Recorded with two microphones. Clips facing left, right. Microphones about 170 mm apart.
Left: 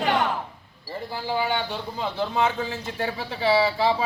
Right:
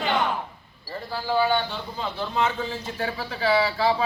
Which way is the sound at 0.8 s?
15° left (ahead or behind).